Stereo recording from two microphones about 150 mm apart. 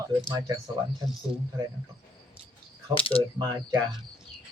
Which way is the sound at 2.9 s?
35° left (ahead or behind).